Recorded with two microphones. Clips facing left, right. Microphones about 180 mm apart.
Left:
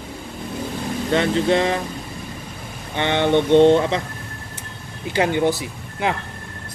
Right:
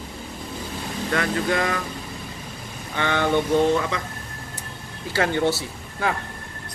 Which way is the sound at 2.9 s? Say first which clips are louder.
Left 4 dB; 25° left (ahead or behind).